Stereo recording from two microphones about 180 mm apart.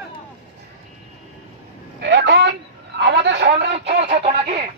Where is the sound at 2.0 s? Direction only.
70° right (ahead or behind).